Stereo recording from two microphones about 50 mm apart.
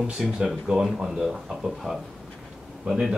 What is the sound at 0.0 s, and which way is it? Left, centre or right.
Speech, centre.